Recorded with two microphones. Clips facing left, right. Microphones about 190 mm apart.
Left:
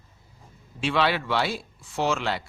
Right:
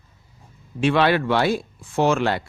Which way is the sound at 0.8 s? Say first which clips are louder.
Right 6 dB; 50° right (ahead or behind).